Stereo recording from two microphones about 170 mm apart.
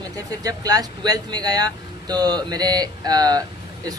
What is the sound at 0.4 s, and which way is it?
Speech, 20° right (ahead or behind).